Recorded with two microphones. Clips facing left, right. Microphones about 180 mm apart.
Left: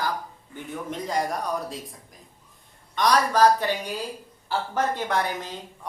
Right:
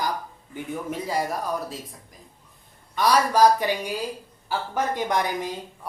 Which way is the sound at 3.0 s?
5° right (ahead or behind).